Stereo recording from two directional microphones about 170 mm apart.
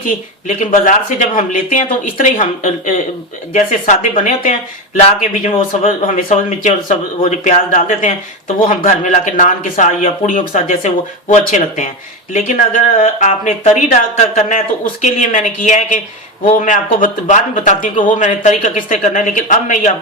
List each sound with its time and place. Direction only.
0.0 s speech: 50° left (ahead or behind)